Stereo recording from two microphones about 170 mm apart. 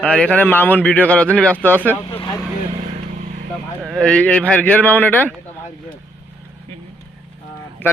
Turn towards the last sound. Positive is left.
turn(degrees=10)  # may be behind; listen again after turning